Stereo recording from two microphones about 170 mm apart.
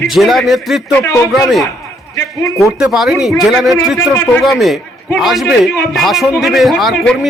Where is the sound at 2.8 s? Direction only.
5° right (ahead or behind).